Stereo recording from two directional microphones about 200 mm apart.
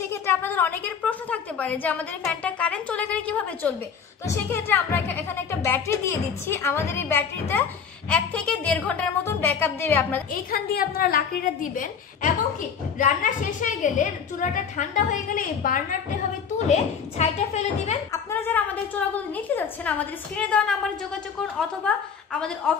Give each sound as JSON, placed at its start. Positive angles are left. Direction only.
{"t": 0.0, "sound": "a woman's voice", "side_deg": 15}
{"t": 10.3, "sound": "a woman's voice", "side_deg": 50}
{"t": 18.3, "sound": "a woman's voice", "side_deg": 10}